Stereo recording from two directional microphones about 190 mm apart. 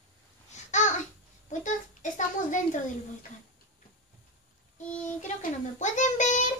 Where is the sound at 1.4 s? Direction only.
40° left (ahead or behind).